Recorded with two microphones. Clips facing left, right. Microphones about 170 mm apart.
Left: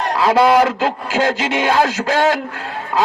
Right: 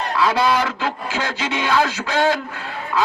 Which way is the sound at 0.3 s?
50° left (ahead or behind).